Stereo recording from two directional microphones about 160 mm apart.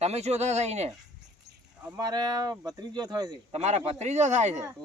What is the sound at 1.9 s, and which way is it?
Speech, 25° right (ahead or behind).